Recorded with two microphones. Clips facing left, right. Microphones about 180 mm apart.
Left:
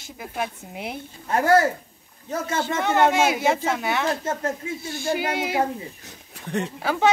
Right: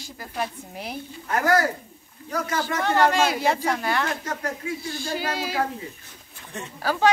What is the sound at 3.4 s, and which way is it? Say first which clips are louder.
Speech: left 1 dB; 5° left (ahead or behind).